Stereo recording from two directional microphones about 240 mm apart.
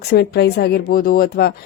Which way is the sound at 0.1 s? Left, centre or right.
Left.